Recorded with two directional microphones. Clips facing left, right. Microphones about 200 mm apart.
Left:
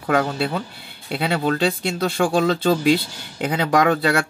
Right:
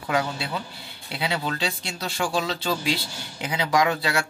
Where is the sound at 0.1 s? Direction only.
55° left (ahead or behind).